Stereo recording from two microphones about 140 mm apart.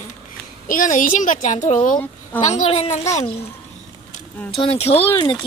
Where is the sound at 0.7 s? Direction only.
70° left (ahead or behind).